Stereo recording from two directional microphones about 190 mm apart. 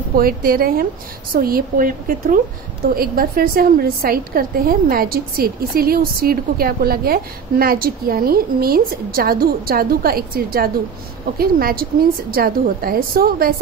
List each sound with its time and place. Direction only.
0.1 s a woman's voice: 50° right (ahead or behind)